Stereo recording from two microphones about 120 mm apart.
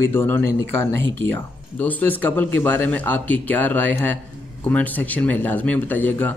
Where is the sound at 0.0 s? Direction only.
20° left (ahead or behind).